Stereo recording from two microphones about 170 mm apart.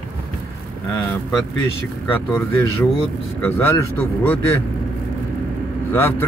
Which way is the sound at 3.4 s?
15° left (ahead or behind).